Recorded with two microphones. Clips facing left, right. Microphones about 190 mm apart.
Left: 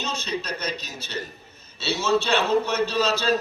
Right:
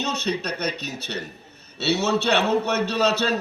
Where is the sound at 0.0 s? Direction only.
65° right (ahead or behind).